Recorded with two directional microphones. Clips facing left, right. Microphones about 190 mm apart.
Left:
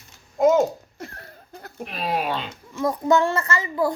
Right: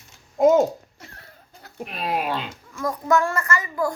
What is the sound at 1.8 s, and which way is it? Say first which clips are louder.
Speech: even; centre (ahead or behind).